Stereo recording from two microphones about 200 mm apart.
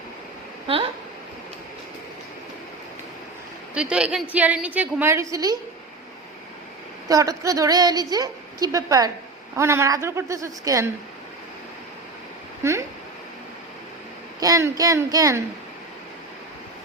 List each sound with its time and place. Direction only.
3.8 s a woman's voice: 5° right (ahead or behind)
7.1 s a woman's voice: 15° right (ahead or behind)
12.6 s a sound: 15° right (ahead or behind)
14.3 s a woman's voice: 15° right (ahead or behind)